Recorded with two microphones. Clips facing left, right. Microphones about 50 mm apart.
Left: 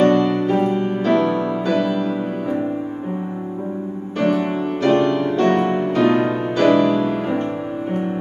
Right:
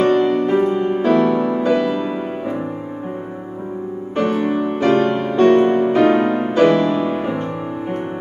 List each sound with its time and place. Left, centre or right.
0.0 s music: centre
1.0 s music: centre
4.2 s music: centre
4.6 s music: right
5.5 s music: centre
6.7 s music: centre